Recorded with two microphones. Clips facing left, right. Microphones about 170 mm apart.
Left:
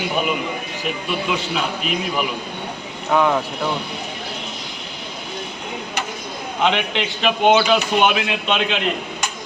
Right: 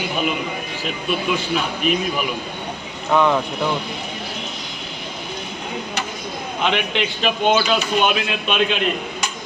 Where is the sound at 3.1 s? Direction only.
10° left (ahead or behind).